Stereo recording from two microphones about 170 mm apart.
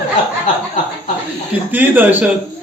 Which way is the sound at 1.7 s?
10° right (ahead or behind).